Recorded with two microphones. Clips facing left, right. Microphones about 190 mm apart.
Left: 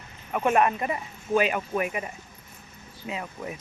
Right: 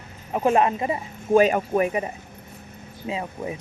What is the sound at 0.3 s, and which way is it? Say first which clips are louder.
Speech: right 3 dB; 30° right (ahead or behind).